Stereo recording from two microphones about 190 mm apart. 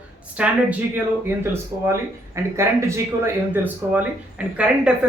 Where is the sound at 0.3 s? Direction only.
5° right (ahead or behind).